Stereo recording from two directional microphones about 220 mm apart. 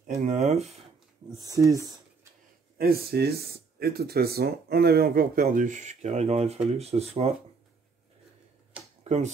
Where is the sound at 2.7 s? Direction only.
45° right (ahead or behind); by 7.3 s 30° right (ahead or behind).